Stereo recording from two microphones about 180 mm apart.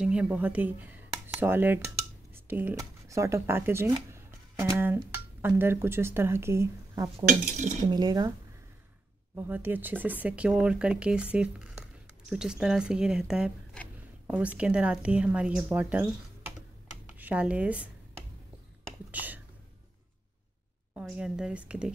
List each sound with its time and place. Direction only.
0.0 s speech: 5° right (ahead or behind)
7.2 s cutlery: 45° right (ahead or behind)
7.9 s speech: 20° right (ahead or behind)
9.3 s speech: 10° right (ahead or behind)
17.2 s speech: 10° right (ahead or behind)
19.1 s speech: 10° right (ahead or behind)
21.0 s speech: centre (ahead or behind)